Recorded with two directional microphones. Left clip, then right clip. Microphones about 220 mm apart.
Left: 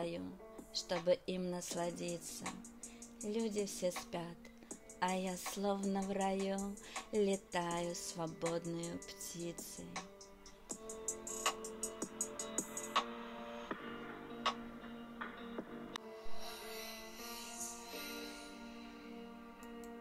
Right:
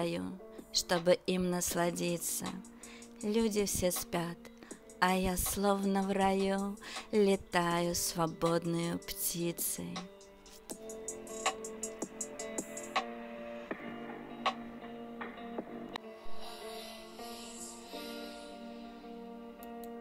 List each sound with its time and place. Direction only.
0.0 s a woman's voice: 25° right (ahead or behind)
10.9 s music: 5° left (ahead or behind)